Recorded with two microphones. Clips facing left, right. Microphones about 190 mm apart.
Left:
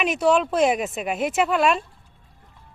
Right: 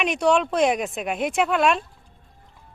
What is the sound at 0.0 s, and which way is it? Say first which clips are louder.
Speech: left 1 dB; 5° left (ahead or behind).